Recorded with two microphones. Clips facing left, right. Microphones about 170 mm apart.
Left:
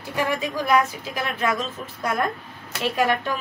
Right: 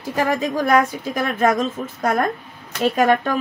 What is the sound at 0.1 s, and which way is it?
A woman's voice, 45° right (ahead or behind).